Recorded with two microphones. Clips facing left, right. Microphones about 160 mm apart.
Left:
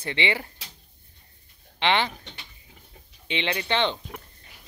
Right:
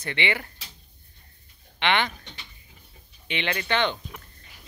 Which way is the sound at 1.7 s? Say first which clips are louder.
Left 1 dB; 30° left (ahead or behind).